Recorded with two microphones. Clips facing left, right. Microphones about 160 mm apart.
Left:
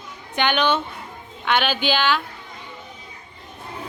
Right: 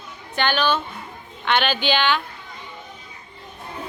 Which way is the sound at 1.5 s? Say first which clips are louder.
Even; 5° left (ahead or behind).